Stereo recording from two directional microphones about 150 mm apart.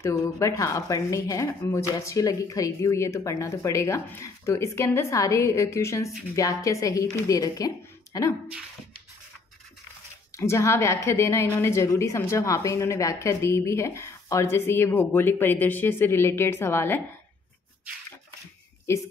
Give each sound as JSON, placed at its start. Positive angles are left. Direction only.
{"t": 0.0, "sound": "a woman's voice", "side_deg": 20}
{"t": 10.3, "sound": "a woman's voice", "side_deg": 20}
{"t": 18.9, "sound": "speech", "side_deg": 20}